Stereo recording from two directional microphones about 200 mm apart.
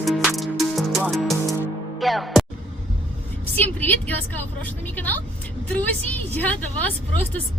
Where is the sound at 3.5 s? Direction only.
10° left (ahead or behind).